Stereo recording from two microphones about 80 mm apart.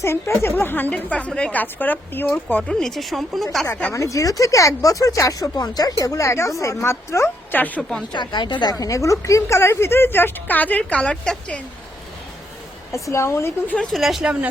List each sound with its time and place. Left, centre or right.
0.0 s a woman's voice: left; by 1.6 s centre
1.6 s a woman's voice: left
2.6 s speech: centre
3.9 s speech: left
6.0 s a woman's voice: left
7.5 s a woman's voice: centre
7.8 s speech: centre
8.1 s speech: left
8.7 s a woman's voice: left; by 11.6 s centre
12.9 s a woman's voice: left
13.9 s speech: centre